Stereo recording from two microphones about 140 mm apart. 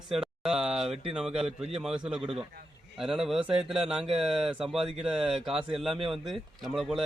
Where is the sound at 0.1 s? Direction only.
5° right (ahead or behind).